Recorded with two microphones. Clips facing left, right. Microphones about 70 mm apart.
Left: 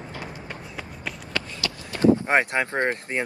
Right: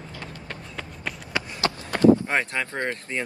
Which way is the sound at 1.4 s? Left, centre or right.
Centre.